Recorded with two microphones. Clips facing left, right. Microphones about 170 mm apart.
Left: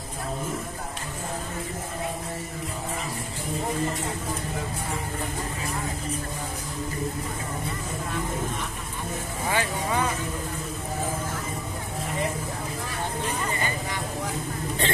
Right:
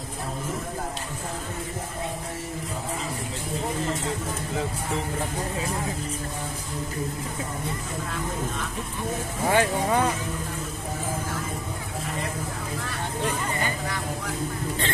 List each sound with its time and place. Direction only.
9.5 s speech: 50° right (ahead or behind)